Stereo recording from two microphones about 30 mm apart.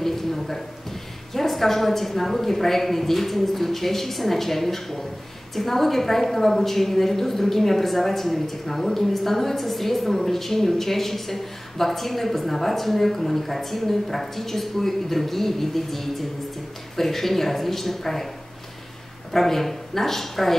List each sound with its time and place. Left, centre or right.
0.0 s a sound: centre
1.3 s a woman's voice: centre
19.3 s a woman's voice: centre